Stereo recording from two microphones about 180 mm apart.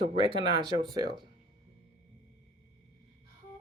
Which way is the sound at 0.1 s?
30° right (ahead or behind).